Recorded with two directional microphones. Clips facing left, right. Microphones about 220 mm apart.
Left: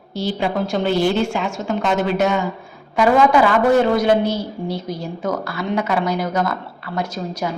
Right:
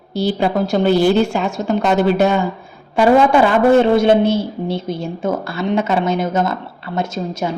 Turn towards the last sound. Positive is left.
turn(degrees=-25)  # may be behind; listen again after turning